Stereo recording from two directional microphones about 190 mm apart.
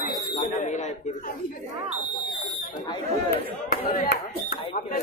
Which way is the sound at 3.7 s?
50° left (ahead or behind).